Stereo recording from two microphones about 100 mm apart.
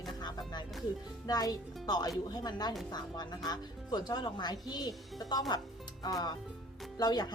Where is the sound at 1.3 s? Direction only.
40° left (ahead or behind).